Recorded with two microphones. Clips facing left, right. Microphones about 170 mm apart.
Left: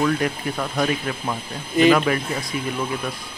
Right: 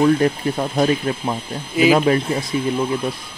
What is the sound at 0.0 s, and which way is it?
Speech, 25° right (ahead or behind).